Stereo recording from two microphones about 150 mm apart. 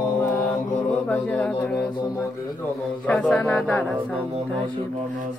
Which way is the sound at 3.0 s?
5° left (ahead or behind).